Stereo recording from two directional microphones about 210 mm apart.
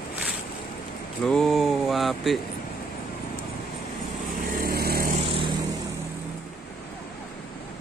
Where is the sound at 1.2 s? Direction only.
Centre (ahead or behind).